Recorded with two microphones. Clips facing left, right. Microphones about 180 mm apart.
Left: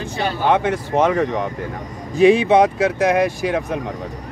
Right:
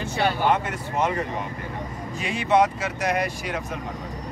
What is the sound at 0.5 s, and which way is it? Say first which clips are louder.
Speech: left 6 dB; 90° left.